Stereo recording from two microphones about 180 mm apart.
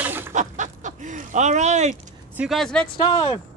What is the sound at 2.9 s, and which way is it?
Speech, 25° left (ahead or behind).